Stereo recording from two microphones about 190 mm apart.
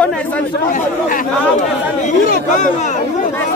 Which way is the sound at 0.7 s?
45° left (ahead or behind).